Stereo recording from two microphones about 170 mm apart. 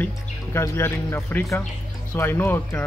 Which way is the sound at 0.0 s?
15° left (ahead or behind).